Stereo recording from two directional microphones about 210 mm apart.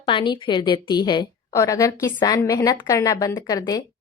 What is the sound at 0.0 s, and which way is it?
A woman's voice, 25° left (ahead or behind).